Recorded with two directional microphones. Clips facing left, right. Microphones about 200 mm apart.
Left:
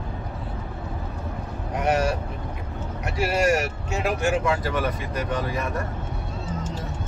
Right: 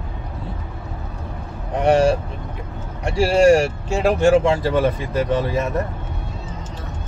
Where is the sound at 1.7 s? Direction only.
30° right (ahead or behind).